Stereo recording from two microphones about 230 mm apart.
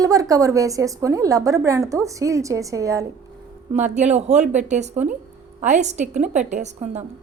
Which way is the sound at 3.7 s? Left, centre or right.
Right.